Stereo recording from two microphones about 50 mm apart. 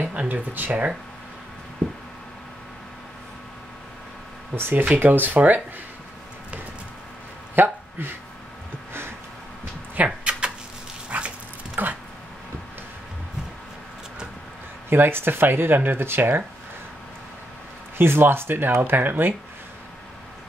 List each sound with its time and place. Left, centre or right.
0.0 s speech: right
4.6 s speech: right
7.5 s a sound: right
10.0 s a sound: right
11.1 s dog: right
14.9 s speech: right
17.9 s speech: right